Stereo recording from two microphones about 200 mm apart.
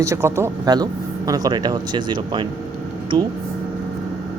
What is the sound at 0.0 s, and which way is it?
Speech, 15° right (ahead or behind).